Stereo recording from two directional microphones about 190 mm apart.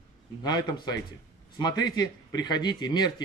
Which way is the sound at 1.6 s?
20° left (ahead or behind).